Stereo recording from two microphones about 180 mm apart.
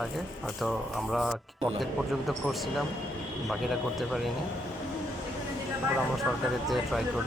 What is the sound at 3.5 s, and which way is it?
Speech, centre (ahead or behind).